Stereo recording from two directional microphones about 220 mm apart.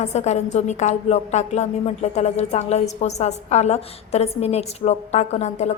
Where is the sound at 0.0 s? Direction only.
30° left (ahead or behind).